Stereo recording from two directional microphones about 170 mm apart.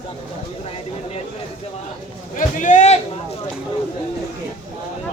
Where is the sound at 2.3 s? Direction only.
45° left (ahead or behind).